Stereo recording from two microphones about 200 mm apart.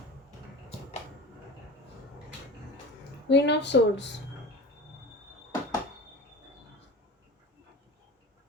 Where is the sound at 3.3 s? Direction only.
60° left (ahead or behind).